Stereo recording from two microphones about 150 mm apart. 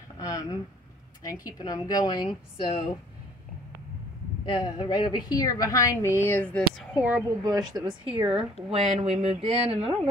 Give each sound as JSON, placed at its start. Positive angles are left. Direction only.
{"t": 0.2, "sound": "a sound", "side_deg": 25}
{"t": 1.2, "sound": "a woman's voice", "side_deg": 25}
{"t": 4.5, "sound": "a woman's voice", "side_deg": 30}
{"t": 7.0, "sound": "speech", "side_deg": -10}
{"t": 7.4, "sound": "speech", "side_deg": -25}